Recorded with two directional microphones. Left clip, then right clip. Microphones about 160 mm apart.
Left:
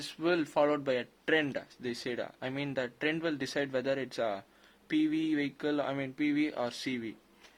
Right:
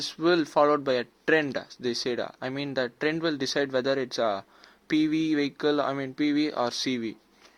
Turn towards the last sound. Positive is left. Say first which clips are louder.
# right 7 dB
turn(degrees=-35)  # may be behind; listen again after turning